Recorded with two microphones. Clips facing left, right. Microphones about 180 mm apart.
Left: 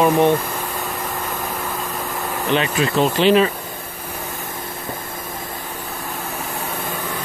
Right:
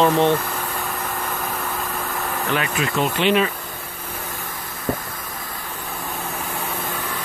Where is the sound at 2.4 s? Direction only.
25° left (ahead or behind).